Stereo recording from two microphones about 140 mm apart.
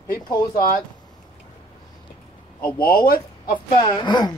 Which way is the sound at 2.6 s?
90° left.